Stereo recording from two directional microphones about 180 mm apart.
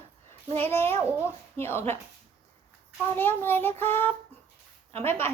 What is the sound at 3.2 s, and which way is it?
A child's voice, 10° left (ahead or behind).